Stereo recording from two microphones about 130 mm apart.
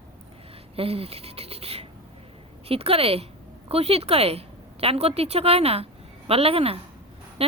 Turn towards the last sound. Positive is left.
turn(degrees=-50)  # may be behind; listen again after turning